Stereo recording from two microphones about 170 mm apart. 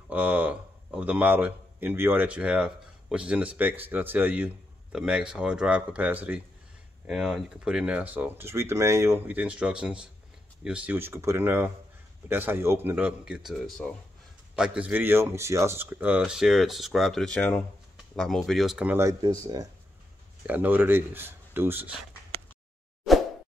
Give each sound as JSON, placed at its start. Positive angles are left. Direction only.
{"t": 0.1, "sound": "speech", "side_deg": -10}
{"t": 20.4, "sound": "speech", "side_deg": -10}
{"t": 23.1, "sound": "plop", "side_deg": 0}